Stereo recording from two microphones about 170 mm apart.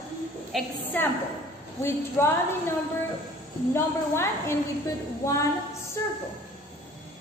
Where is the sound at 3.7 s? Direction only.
15° left (ahead or behind).